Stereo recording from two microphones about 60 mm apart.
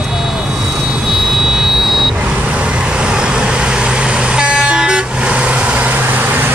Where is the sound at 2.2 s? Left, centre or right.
Centre.